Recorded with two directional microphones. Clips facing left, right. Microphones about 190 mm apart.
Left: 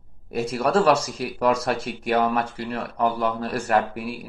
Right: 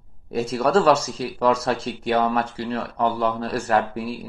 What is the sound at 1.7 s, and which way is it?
Speech, 10° left (ahead or behind).